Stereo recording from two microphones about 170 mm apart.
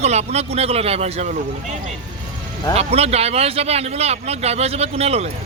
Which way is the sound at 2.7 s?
35° right (ahead or behind).